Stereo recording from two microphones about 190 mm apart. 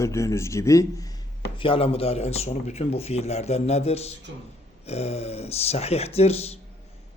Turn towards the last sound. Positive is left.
turn(degrees=35)  # may be behind; listen again after turning